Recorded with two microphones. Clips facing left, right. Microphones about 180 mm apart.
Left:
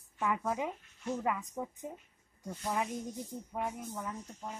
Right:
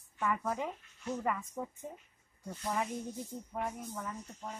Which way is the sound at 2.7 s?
10° left (ahead or behind).